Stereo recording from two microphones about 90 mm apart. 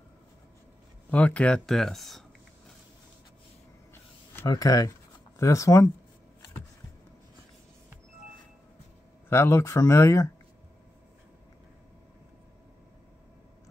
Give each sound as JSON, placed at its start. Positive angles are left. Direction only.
{"t": 1.1, "sound": "speech", "side_deg": 15}
{"t": 3.9, "sound": "a sound", "side_deg": 25}
{"t": 4.5, "sound": "speech", "side_deg": 40}
{"t": 9.3, "sound": "speech", "side_deg": 30}